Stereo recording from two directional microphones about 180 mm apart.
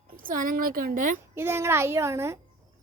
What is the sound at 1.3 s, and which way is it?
A child's voice, 15° right (ahead or behind).